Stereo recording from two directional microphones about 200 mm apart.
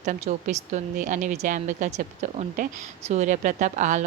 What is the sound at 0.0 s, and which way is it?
A woman's voice, 35° right (ahead or behind).